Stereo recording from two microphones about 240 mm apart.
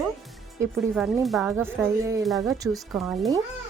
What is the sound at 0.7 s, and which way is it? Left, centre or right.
A woman's voice, centre.